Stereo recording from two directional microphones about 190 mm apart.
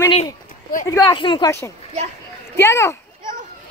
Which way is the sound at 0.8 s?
15° left (ahead or behind).